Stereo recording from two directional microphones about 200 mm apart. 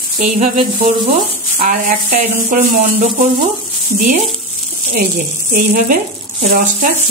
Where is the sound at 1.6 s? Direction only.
40° right (ahead or behind).